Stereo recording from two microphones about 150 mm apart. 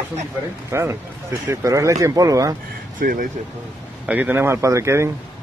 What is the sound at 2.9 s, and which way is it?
Speech, 65° right (ahead or behind).